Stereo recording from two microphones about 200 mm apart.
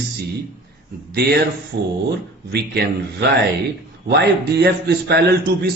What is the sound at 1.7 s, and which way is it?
A man's voice, 55° right (ahead or behind).